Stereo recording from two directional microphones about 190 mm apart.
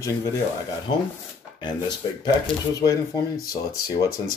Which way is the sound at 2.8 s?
20° left (ahead or behind).